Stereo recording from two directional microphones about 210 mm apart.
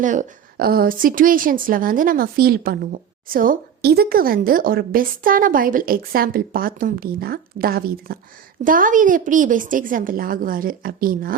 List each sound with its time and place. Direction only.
0.0 s a woman's voice: 35° right (ahead or behind)